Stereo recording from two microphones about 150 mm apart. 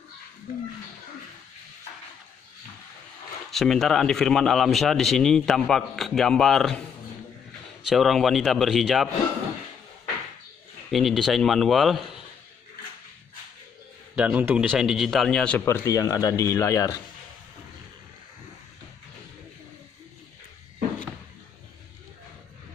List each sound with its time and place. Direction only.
3.5 s a man's voice: centre (ahead or behind)
7.8 s a man's voice: centre (ahead or behind)
10.9 s a man's voice: centre (ahead or behind)
14.1 s a man's voice: 10° right (ahead or behind); by 15.6 s 5° left (ahead or behind)
15.6 s speech: 20° left (ahead or behind)